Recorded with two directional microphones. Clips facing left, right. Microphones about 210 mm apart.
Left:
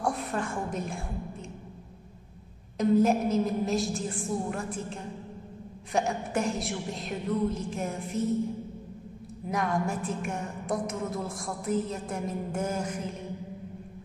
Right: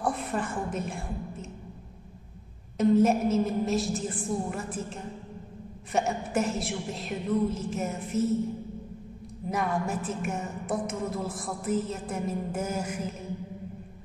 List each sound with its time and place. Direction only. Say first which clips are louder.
0.0 s a woman's voice: right 1 dB; centre (ahead or behind)
2.8 s a woman's voice: right 1 dB; centre (ahead or behind)
5.9 s a woman's voice: right 1 dB; 5° right (ahead or behind)
9.5 s a woman's voice: even; centre (ahead or behind)